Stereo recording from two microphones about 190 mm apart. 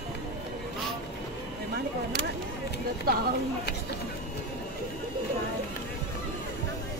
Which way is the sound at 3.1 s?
55° right (ahead or behind).